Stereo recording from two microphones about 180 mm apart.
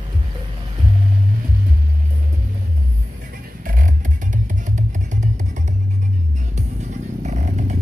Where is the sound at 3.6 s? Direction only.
50° right (ahead or behind).